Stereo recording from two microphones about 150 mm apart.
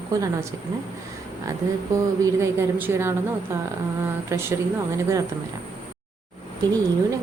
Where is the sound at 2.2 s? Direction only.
20° right (ahead or behind).